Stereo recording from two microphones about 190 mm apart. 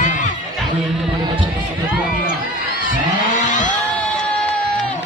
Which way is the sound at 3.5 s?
40° left (ahead or behind).